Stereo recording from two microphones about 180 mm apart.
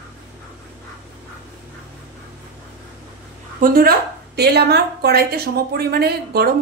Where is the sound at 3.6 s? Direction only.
55° right (ahead or behind).